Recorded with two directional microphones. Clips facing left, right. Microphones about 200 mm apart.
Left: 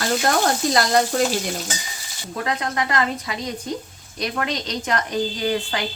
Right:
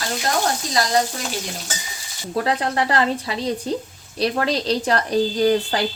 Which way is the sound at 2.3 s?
35° right (ahead or behind).